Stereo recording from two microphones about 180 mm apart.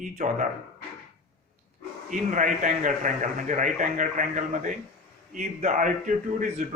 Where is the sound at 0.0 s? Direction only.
45° right (ahead or behind).